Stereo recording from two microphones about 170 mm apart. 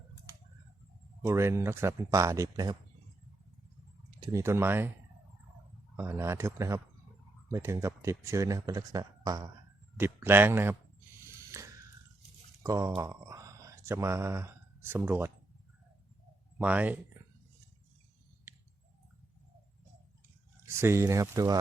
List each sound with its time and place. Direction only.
1.2 s speech: 15° right (ahead or behind)
4.2 s speech: 20° right (ahead or behind)
6.0 s speech: 15° right (ahead or behind)
11.3 s a sound: 15° right (ahead or behind)
12.6 s speech: 20° right (ahead or behind)
16.6 s speech: 10° right (ahead or behind)
20.8 s speech: 15° right (ahead or behind)